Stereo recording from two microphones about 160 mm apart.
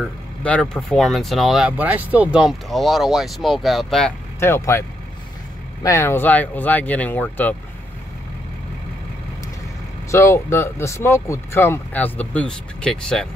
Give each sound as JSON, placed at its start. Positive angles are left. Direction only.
{"t": 0.4, "sound": "speech", "side_deg": 5}
{"t": 4.4, "sound": "speech", "side_deg": 15}
{"t": 10.1, "sound": "speech", "side_deg": 15}